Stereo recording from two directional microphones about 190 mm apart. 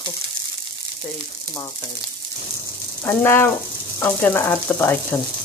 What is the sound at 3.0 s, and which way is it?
Speech, 10° left (ahead or behind).